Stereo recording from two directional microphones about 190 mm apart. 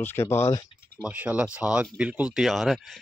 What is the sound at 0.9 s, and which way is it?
Speech, 5° right (ahead or behind).